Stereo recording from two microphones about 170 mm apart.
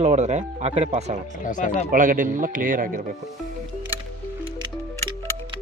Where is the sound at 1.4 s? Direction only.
50° left (ahead or behind).